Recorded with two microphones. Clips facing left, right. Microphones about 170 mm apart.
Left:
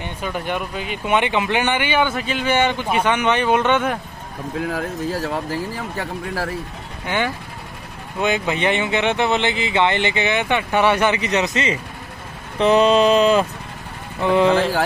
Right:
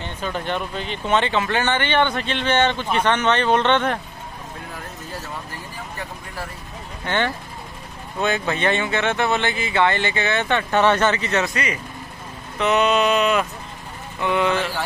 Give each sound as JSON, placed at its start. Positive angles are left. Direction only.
{"t": 0.0, "sound": "speech", "side_deg": 10}
{"t": 4.6, "sound": "speech", "side_deg": 90}
{"t": 7.1, "sound": "speech", "side_deg": 10}
{"t": 12.5, "sound": "a sound", "side_deg": 30}